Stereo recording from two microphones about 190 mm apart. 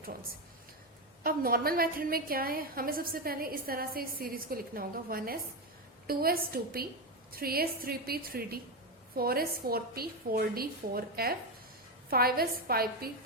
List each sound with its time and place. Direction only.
1.2 s a woman's voice: 50° right (ahead or behind)